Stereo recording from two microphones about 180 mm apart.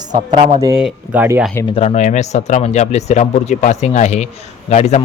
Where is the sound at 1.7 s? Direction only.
35° left (ahead or behind).